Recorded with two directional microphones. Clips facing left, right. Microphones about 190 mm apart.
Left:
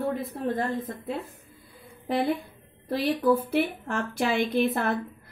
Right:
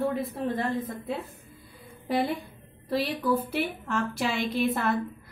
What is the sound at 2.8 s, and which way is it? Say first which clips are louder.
A woman's voice: left 4 dB; 50° left (ahead or behind).